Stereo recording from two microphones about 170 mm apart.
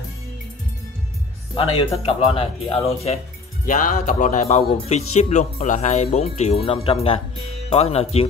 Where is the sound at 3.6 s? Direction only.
50° left (ahead or behind).